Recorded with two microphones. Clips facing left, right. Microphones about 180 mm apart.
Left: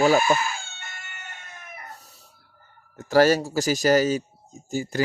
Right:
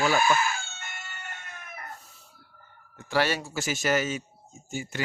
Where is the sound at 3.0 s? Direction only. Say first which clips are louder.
Left 9 dB; 40° left (ahead or behind).